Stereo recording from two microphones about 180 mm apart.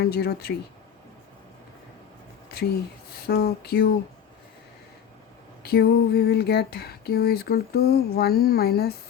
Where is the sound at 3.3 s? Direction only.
60° left (ahead or behind).